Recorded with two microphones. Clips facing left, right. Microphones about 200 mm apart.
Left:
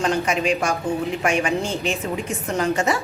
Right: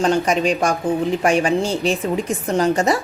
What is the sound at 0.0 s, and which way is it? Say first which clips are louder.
A woman's voice: right 4 dB; 35° right (ahead or behind).